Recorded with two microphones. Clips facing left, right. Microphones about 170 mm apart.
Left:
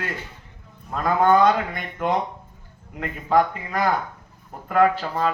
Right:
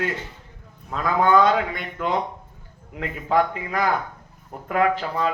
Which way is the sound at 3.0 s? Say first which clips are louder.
Left 1 dB; 45° left (ahead or behind).